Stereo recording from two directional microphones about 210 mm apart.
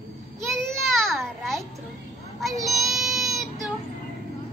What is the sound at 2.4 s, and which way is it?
Child singing, centre (ahead or behind).